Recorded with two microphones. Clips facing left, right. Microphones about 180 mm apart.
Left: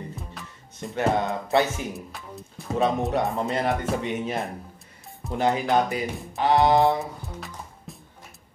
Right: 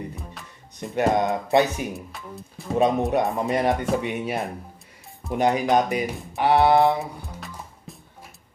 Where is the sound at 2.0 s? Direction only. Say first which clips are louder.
Right 1 dB; centre (ahead or behind).